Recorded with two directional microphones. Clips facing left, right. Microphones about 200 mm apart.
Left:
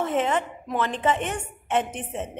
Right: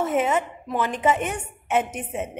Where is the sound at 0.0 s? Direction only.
10° right (ahead or behind).